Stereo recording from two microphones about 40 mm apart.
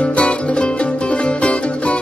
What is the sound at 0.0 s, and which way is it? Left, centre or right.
Music, left.